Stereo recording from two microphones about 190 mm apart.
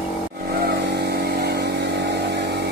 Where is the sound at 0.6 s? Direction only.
60° right (ahead or behind).